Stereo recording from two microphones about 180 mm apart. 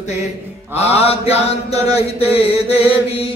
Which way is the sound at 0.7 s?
35° left (ahead or behind).